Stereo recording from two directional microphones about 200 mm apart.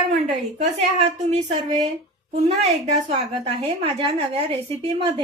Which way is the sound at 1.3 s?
35° right (ahead or behind).